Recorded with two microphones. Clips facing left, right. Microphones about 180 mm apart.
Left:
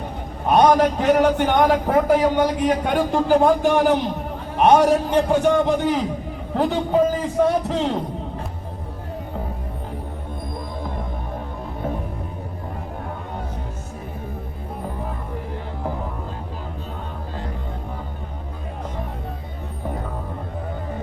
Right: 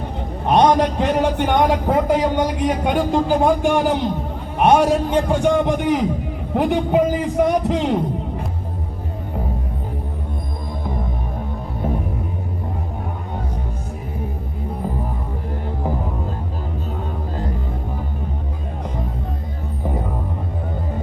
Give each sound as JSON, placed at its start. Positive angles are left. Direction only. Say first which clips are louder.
{"t": 0.5, "sound": "a man's voice", "louder": "even", "side_deg": -20}